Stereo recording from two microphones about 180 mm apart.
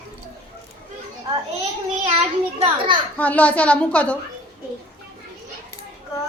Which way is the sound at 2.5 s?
35° right (ahead or behind).